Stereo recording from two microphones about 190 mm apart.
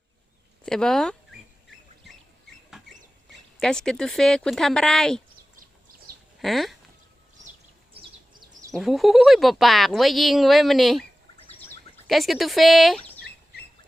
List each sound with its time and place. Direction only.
0.6 s a sound: 5° left (ahead or behind)
3.6 s speech: 5° left (ahead or behind)
6.1 s bird: 50° right (ahead or behind)
6.4 s speech: centre (ahead or behind)
8.7 s speech: centre (ahead or behind)
12.0 s speech: centre (ahead or behind)